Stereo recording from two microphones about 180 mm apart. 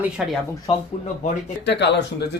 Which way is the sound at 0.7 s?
30° left (ahead or behind).